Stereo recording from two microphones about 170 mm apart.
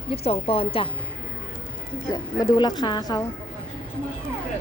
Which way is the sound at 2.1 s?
25° left (ahead or behind).